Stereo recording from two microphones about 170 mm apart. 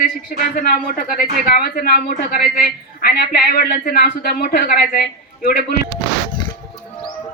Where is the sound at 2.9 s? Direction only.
60° left (ahead or behind).